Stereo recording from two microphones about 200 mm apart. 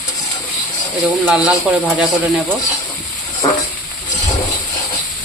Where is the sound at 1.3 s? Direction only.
5° right (ahead or behind).